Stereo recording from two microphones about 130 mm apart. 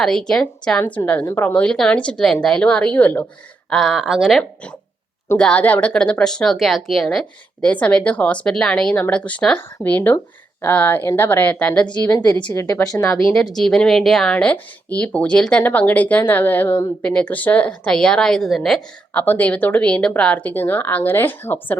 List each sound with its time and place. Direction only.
0.0 s a woman's voice: 5° left (ahead or behind); by 1.5 s 20° left (ahead or behind)
1.5 s speech: 10° left (ahead or behind)
3.7 s speech: centre (ahead or behind)
12.1 s a woman's voice: 30° left (ahead or behind)
13.2 s speech: 5° left (ahead or behind)
19.2 s speech: 10° left (ahead or behind)